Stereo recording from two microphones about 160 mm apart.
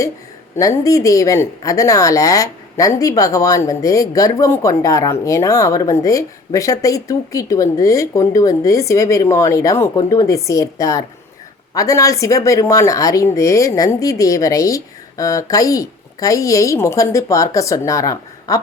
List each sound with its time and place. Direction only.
0.5 s speech: 20° left (ahead or behind)